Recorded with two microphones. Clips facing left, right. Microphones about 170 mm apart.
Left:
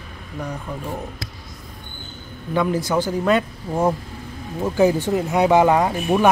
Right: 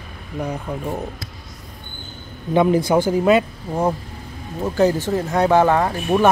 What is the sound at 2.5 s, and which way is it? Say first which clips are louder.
Speech: right 5 dB; 20° right (ahead or behind).